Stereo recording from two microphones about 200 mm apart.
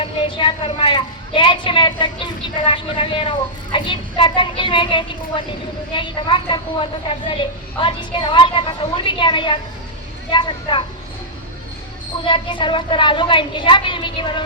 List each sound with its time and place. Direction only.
0.0 s a woman's voice: 25° left (ahead or behind)
12.2 s a woman's voice: 25° left (ahead or behind)